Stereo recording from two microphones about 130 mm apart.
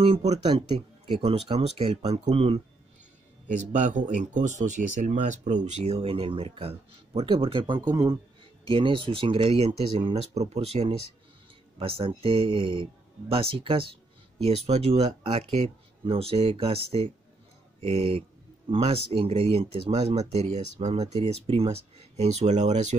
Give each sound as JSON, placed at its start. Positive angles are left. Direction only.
{"t": 0.0, "sound": "speech", "side_deg": -55}
{"t": 0.4, "sound": "speech", "side_deg": -35}
{"t": 1.2, "sound": "speech", "side_deg": -45}
{"t": 3.4, "sound": "speech", "side_deg": -75}
{"t": 8.6, "sound": "speech", "side_deg": -40}
{"t": 16.0, "sound": "speech", "side_deg": -45}